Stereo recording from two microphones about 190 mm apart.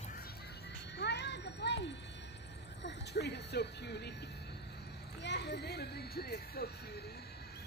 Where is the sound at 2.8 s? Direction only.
65° left (ahead or behind).